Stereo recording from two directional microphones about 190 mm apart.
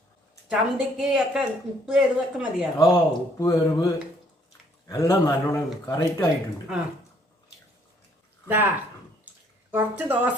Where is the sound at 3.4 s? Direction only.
15° left (ahead or behind).